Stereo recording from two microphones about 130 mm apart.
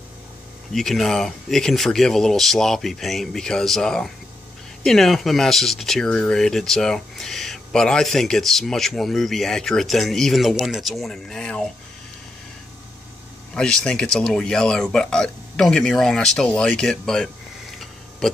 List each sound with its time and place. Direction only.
0.7 s speech: 5° left (ahead or behind)
13.6 s speech: 5° left (ahead or behind)